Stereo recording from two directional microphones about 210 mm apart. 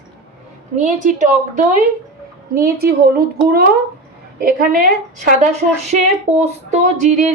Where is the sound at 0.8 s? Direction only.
35° right (ahead or behind).